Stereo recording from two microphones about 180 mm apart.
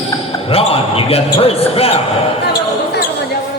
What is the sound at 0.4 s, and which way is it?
Speech, 30° left (ahead or behind).